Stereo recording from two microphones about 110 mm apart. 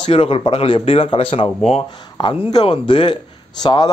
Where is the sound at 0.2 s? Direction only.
55° left (ahead or behind).